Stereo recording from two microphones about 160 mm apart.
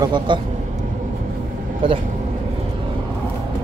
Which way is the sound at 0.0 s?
30° right (ahead or behind).